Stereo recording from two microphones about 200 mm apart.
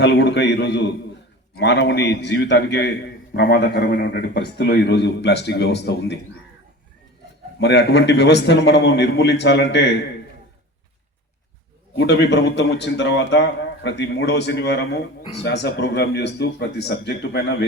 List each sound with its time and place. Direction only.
0.0 s a man's voice: 60° left (ahead or behind)
7.6 s a man's voice: 60° left (ahead or behind)
11.9 s a man's voice: 60° left (ahead or behind)